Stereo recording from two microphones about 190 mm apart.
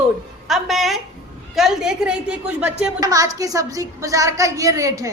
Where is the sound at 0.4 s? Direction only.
Centre (ahead or behind).